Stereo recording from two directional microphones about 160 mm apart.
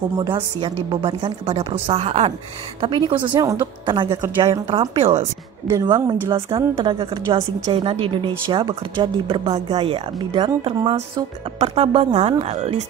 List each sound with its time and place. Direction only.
0.2 s a woman's voice: 25° right (ahead or behind)
5.7 s a woman's voice: 25° right (ahead or behind)
6.5 s speech: 35° right (ahead or behind)